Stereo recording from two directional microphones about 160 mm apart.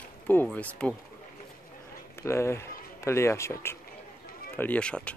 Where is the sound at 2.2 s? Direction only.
15° left (ahead or behind).